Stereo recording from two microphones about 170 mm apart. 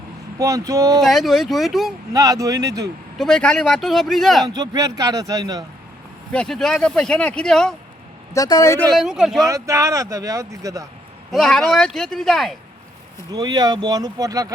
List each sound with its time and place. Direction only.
0.3 s speech: 20° right (ahead or behind)
1.0 s speech: centre (ahead or behind)
2.1 s speech: 20° right (ahead or behind)
3.2 s speech: 5° left (ahead or behind)
4.4 s speech: 20° right (ahead or behind)
6.3 s speech: 5° left (ahead or behind)
8.3 s a man's voice: 20° left (ahead or behind)
9.0 s speech: 5° right (ahead or behind)
9.4 s speech: 20° right (ahead or behind)
11.3 s speech: 5° left (ahead or behind)
13.3 s speech: 25° right (ahead or behind)